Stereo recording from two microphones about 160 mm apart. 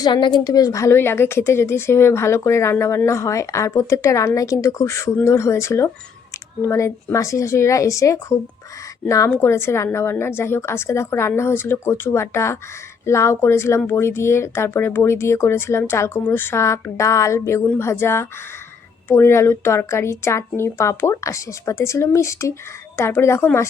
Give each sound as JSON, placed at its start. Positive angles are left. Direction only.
{"t": 0.0, "sound": "a woman's voice", "side_deg": 30}